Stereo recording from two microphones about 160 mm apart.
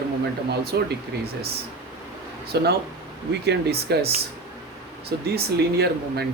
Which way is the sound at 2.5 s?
90° right.